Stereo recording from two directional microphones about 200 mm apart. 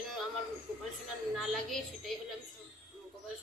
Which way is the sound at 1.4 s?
Centre (ahead or behind).